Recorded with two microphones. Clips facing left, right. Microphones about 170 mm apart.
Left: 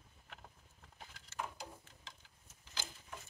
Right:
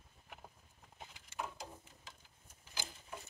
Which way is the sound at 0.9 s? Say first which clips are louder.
Even; 15° right (ahead or behind).